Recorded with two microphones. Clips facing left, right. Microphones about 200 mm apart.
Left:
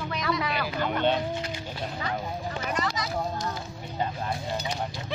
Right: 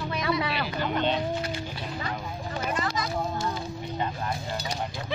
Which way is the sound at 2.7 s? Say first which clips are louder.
Even; 55° right (ahead or behind).